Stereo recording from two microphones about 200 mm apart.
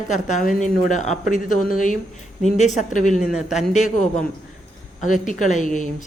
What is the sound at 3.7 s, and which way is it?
Speech, 40° left (ahead or behind).